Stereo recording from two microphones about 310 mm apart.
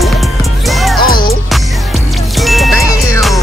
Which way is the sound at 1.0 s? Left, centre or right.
Left.